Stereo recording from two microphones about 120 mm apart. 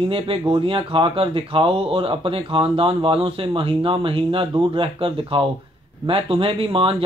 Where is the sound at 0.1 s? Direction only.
50° right (ahead or behind).